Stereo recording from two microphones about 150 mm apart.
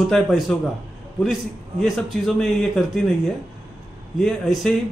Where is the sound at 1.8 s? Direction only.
Centre (ahead or behind).